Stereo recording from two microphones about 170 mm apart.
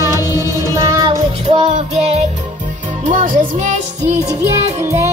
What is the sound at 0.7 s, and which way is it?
Music, 15° right (ahead or behind).